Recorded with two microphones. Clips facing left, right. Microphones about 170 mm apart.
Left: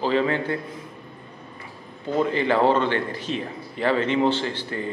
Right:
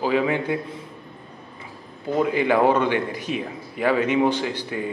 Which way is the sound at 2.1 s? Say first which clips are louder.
Right 1 dB; 10° right (ahead or behind).